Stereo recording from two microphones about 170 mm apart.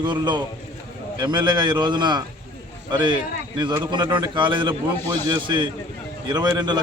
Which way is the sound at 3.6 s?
25° right (ahead or behind).